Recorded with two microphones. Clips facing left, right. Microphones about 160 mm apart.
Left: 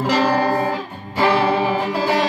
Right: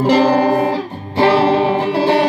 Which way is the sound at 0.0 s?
30° right (ahead or behind).